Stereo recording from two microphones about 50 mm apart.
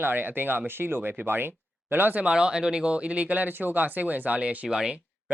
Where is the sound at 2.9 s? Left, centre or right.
Right.